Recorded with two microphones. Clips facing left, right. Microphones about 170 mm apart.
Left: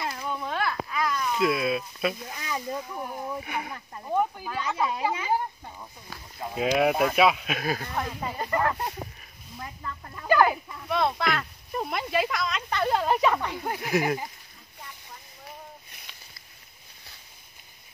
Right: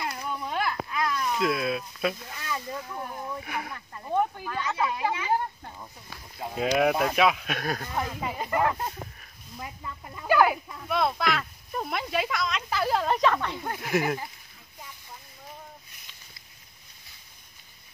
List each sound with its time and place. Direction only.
0.5 s a sound: 15° right (ahead or behind)
0.9 s speech: centre (ahead or behind)
3.3 s speech: centre (ahead or behind)
13.7 s speech: centre (ahead or behind)
14.0 s speech: 15° left (ahead or behind)